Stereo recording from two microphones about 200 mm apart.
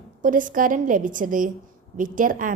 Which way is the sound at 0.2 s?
40° right (ahead or behind).